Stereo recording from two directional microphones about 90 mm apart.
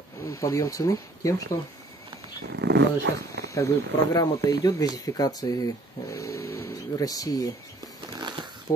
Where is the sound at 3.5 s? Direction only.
35° left (ahead or behind).